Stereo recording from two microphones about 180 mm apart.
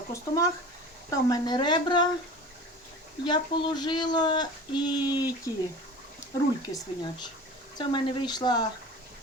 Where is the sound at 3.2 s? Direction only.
25° left (ahead or behind).